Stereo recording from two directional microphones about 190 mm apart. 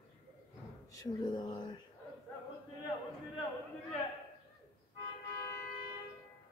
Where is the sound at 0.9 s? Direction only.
20° left (ahead or behind).